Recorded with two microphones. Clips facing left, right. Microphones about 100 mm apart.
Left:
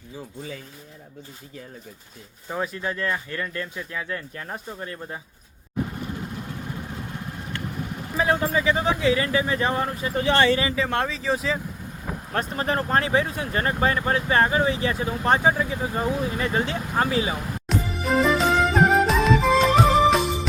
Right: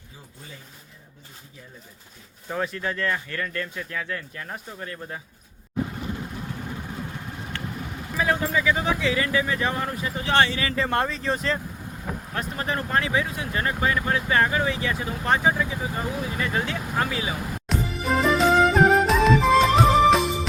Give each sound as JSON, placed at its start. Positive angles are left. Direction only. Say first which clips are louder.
{"t": 2.5, "sound": "speech", "louder": "even", "side_deg": 15}
{"t": 8.1, "sound": "speech", "louder": "left 2 dB", "side_deg": 30}
{"t": 10.8, "sound": "speech", "louder": "even", "side_deg": 0}
{"t": 12.3, "sound": "speech", "louder": "left 4 dB", "side_deg": 35}
{"t": 17.7, "sound": "music", "louder": "left 1 dB", "side_deg": 0}